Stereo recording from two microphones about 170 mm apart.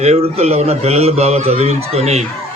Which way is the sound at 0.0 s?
40° right (ahead or behind).